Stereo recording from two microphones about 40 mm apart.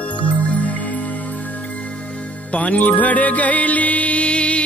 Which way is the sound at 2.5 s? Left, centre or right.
Left.